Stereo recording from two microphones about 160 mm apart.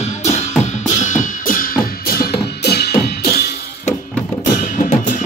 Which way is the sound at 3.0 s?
75° left (ahead or behind).